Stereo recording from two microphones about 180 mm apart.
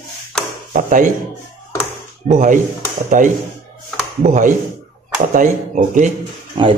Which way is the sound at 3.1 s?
45° right (ahead or behind).